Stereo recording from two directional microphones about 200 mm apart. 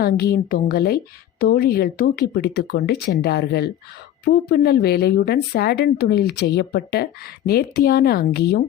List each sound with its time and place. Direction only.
0.0 s a woman's voice: 50° left (ahead or behind)